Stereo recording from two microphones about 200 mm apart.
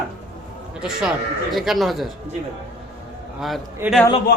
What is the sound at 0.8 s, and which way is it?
Speech, centre (ahead or behind).